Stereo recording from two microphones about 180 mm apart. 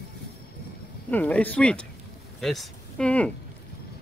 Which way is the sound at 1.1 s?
10° left (ahead or behind).